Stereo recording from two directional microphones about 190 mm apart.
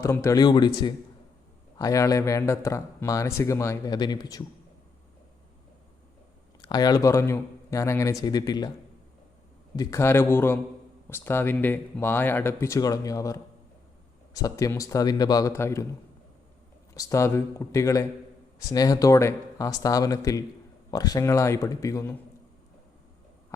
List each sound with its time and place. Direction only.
0.0 s speech: 15° left (ahead or behind)
1.8 s speech: 15° left (ahead or behind)
6.6 s speech: 20° left (ahead or behind)
9.7 s speech: 15° left (ahead or behind)
16.9 s speech: 15° left (ahead or behind)